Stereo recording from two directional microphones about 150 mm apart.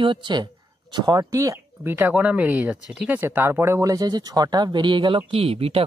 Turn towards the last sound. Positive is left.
turn(degrees=-40)  # may be behind; listen again after turning